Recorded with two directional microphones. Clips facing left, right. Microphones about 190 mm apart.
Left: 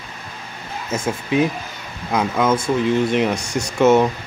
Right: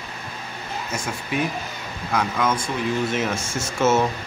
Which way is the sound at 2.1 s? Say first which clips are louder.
Left 5 dB; 25° left (ahead or behind).